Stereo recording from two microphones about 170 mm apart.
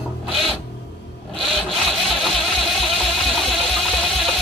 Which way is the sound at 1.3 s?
Centre (ahead or behind).